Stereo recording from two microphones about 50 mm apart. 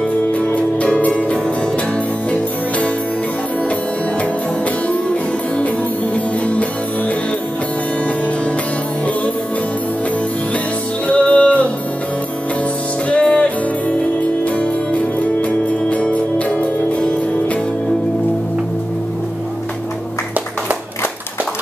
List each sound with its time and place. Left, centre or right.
0.3 s music: left
6.1 s music: left
11.1 s music: left
13.1 s music: left